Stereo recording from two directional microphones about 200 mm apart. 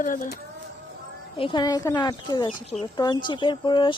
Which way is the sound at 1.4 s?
25° left (ahead or behind).